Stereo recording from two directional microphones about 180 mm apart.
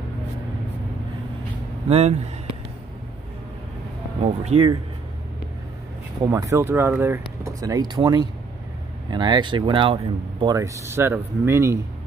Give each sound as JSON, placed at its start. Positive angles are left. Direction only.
{"t": 1.9, "sound": "speech", "side_deg": -35}
{"t": 4.2, "sound": "speech", "side_deg": -35}
{"t": 6.2, "sound": "speech", "side_deg": -15}